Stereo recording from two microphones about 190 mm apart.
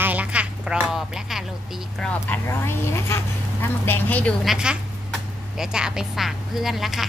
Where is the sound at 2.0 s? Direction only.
10° left (ahead or behind).